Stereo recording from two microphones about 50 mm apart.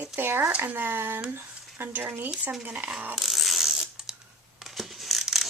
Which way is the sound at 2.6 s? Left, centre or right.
Right.